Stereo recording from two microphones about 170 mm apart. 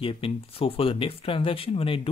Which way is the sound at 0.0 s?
30° left (ahead or behind).